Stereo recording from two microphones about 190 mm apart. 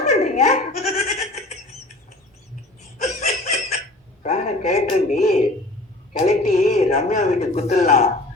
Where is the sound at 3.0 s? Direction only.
40° left (ahead or behind).